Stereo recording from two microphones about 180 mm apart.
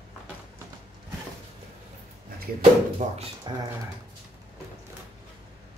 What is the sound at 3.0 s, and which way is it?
Speech, 45° right (ahead or behind).